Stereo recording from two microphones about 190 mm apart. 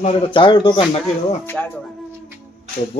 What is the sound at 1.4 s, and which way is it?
Speech, 10° left (ahead or behind).